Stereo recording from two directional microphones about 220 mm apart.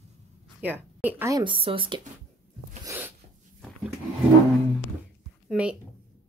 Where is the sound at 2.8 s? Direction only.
10° right (ahead or behind).